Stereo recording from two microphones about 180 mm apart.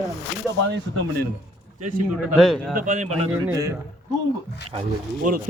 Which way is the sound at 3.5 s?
20° right (ahead or behind).